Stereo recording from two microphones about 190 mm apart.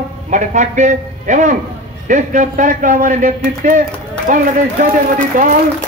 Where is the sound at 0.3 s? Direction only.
40° right (ahead or behind).